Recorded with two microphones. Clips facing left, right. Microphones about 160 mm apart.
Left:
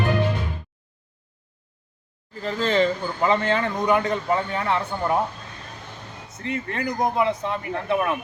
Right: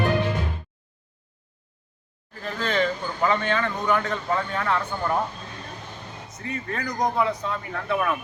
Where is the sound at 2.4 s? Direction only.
25° left (ahead or behind).